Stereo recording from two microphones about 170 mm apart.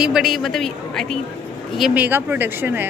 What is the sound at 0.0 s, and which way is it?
Speech, centre (ahead or behind).